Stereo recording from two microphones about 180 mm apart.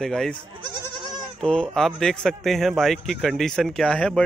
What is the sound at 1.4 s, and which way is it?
Speech, 5° left (ahead or behind).